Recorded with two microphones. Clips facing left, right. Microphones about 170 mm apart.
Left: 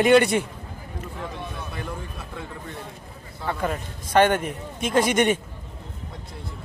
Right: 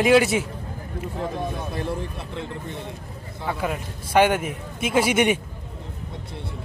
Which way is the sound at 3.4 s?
5° right (ahead or behind).